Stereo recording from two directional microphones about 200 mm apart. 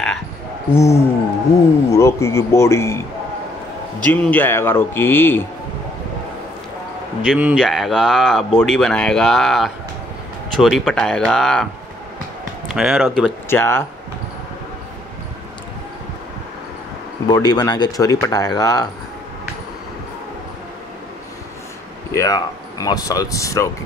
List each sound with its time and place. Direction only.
0.7 s speech: 15° left (ahead or behind)
4.0 s speech: 5° left (ahead or behind)
7.2 s a man's voice: 5° right (ahead or behind)
12.7 s speech: centre (ahead or behind)
13.5 s speech: 10° left (ahead or behind)
17.3 s speech: 20° left (ahead or behind)
22.1 s speech: 15° left (ahead or behind)